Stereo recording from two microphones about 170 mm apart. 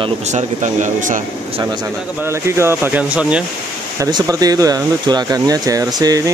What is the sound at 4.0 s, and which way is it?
Speech, 25° right (ahead or behind).